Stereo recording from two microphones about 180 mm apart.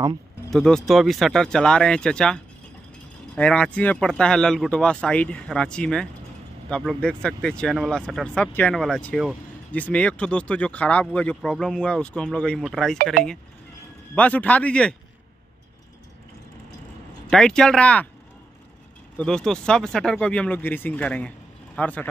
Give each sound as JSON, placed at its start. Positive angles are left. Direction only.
{"t": 0.5, "sound": "speech", "side_deg": 5}
{"t": 12.9, "sound": "speech", "side_deg": -55}
{"t": 14.1, "sound": "speech", "side_deg": 10}
{"t": 17.3, "sound": "speech", "side_deg": 5}
{"t": 19.1, "sound": "speech", "side_deg": 5}